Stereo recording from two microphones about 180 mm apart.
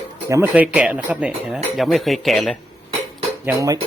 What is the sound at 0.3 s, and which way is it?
Speech, 15° right (ahead or behind).